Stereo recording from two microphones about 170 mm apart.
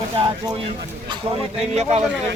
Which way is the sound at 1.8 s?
40° right (ahead or behind).